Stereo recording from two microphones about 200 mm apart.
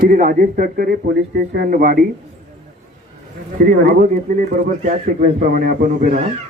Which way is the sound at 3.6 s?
45° right (ahead or behind).